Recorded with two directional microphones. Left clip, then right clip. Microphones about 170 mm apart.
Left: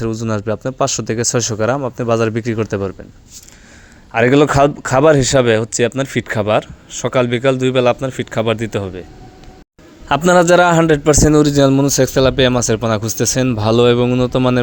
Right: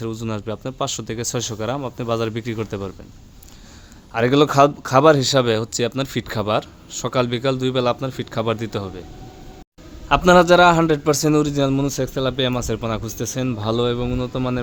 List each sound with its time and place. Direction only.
0.0 s speech: 30° left (ahead or behind)
4.1 s speech: 25° left (ahead or behind)
10.1 s speech: 30° left (ahead or behind)